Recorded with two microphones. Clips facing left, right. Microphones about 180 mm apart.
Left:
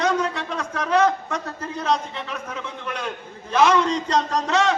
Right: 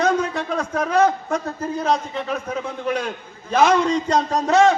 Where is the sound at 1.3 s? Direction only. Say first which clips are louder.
Right 5 dB; 10° right (ahead or behind).